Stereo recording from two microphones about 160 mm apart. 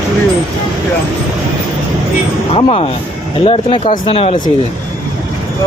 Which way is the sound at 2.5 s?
35° left (ahead or behind).